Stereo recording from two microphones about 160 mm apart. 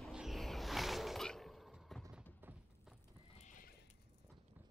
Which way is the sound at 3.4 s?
55° left (ahead or behind).